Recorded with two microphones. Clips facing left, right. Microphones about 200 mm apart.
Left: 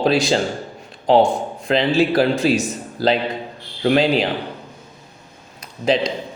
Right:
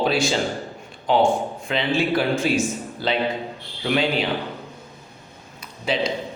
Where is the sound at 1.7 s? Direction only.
40° left (ahead or behind).